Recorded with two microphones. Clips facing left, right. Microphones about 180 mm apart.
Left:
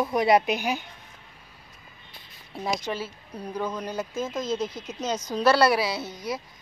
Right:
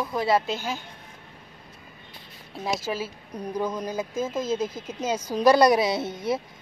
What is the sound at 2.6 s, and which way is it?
A woman's voice, 5° right (ahead or behind).